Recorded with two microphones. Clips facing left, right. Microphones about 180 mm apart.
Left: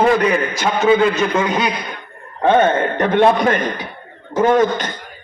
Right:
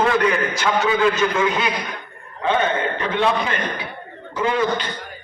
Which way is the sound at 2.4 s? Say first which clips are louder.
Left 6 dB; 50° left (ahead or behind).